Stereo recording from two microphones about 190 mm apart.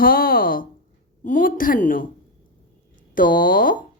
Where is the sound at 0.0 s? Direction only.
50° left (ahead or behind).